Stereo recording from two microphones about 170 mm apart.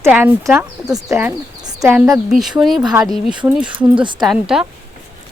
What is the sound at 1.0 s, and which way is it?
A woman's voice, centre (ahead or behind).